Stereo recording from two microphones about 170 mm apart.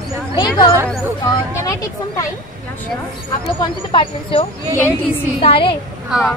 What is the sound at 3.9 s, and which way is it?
Speech, 30° left (ahead or behind).